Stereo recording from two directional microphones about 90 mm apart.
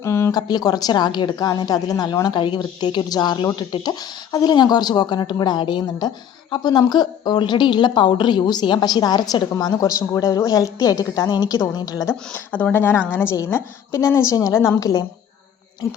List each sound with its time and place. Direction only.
0.0 s a sound: 30° left (ahead or behind)
0.3 s a woman's voice: 50° left (ahead or behind)
12.0 s a woman's voice: 20° left (ahead or behind); by 15.0 s 45° left (ahead or behind)